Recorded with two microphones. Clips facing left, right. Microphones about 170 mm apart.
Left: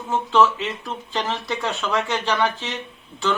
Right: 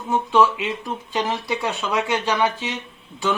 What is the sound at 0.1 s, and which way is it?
Speech, 15° right (ahead or behind).